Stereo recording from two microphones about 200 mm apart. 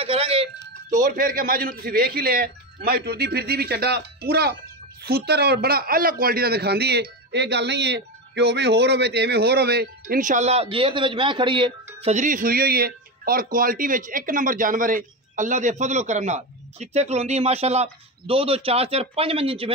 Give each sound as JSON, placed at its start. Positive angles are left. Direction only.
{"t": 0.0, "sound": "music", "side_deg": -30}
{"t": 0.8, "sound": "a man's voice", "side_deg": -40}